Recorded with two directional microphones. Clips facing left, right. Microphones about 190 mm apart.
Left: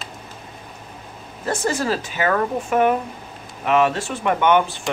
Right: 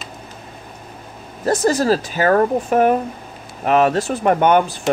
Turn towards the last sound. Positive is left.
turn(degrees=-40)  # may be behind; listen again after turning